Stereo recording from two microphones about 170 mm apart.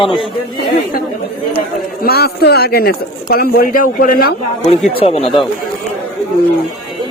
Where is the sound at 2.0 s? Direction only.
65° left (ahead or behind).